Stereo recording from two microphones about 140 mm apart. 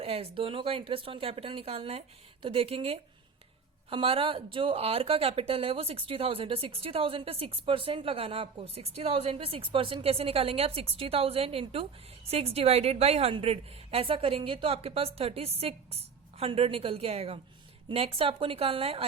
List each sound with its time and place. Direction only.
0.0 s speech: 45° right (ahead or behind)